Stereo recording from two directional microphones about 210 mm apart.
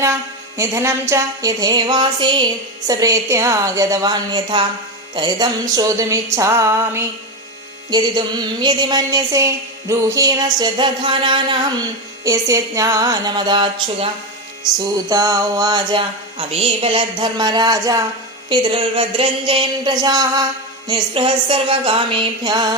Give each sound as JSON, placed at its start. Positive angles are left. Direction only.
{"t": 0.0, "sound": "a woman's voice", "side_deg": -15}